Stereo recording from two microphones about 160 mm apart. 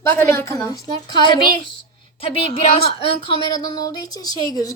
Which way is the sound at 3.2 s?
25° left (ahead or behind).